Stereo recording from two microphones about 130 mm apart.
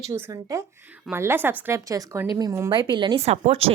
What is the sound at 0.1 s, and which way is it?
A woman's voice, 25° right (ahead or behind).